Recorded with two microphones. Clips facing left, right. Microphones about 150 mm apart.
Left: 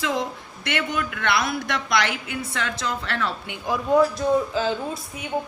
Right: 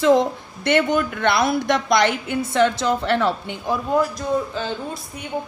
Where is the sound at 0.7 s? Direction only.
35° right (ahead or behind).